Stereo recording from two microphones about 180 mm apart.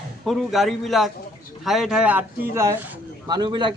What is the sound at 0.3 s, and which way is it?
Speech, centre (ahead or behind).